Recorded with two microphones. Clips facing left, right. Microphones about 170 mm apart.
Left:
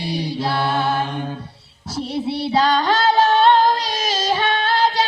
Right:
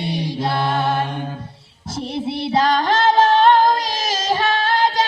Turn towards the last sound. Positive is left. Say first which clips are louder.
# even
turn(degrees=-45)  # may be behind; listen again after turning